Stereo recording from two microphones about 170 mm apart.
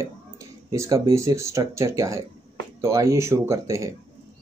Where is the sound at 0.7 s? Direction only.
20° right (ahead or behind).